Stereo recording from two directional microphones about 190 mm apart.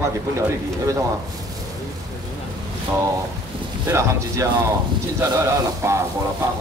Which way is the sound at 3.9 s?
15° right (ahead or behind).